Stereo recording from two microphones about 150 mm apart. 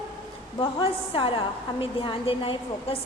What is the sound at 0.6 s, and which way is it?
A woman's voice, 35° left (ahead or behind).